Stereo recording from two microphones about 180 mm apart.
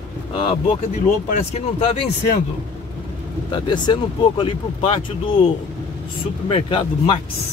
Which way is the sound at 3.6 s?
25° left (ahead or behind).